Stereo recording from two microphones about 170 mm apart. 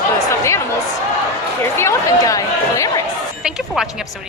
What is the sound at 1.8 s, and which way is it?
Chatter, 20° left (ahead or behind).